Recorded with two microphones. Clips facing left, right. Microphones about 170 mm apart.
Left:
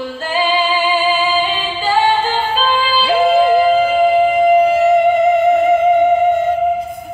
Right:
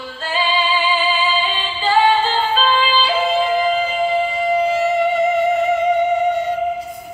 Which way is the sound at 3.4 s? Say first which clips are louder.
Left 6 dB; 60° left (ahead or behind).